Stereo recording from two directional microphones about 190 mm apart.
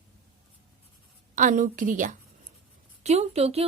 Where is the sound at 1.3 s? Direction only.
45° right (ahead or behind).